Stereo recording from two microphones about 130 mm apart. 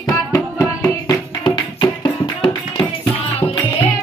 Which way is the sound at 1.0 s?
35° left (ahead or behind).